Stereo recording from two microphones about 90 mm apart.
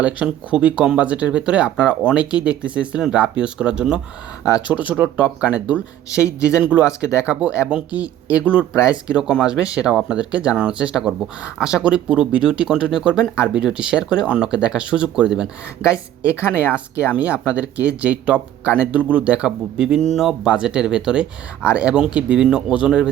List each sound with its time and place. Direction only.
0.0 s speech: 15° right (ahead or behind)
6.1 s speech: 35° left (ahead or behind)
6.6 s speech: 15° right (ahead or behind)